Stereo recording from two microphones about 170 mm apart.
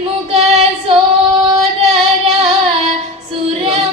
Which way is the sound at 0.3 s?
35° right (ahead or behind).